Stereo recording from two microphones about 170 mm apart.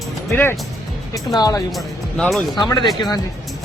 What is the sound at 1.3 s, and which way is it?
Speech, 25° left (ahead or behind).